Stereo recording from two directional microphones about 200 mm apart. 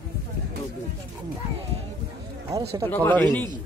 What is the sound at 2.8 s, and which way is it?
Speech, 10° left (ahead or behind).